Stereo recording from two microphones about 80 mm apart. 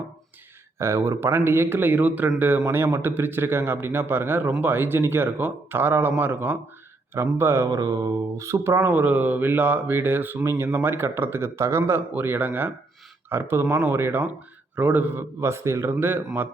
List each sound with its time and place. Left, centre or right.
0.8 s speech: right
7.8 s mantra: right
8.8 s speech: right